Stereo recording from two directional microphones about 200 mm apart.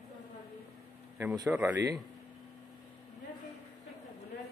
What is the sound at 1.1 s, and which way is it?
Speech, 10° right (ahead or behind).